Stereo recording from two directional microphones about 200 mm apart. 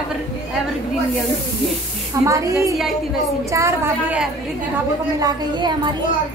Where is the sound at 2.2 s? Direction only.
15° right (ahead or behind).